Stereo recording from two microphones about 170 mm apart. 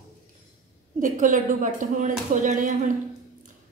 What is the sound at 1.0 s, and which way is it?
A woman's voice, 50° right (ahead or behind).